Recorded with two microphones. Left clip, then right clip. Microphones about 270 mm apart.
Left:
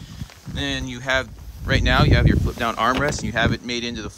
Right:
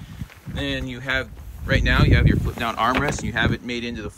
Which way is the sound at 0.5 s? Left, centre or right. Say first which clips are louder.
Left 1 dB; centre.